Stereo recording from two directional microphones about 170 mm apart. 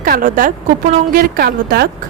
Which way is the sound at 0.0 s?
55° right (ahead or behind).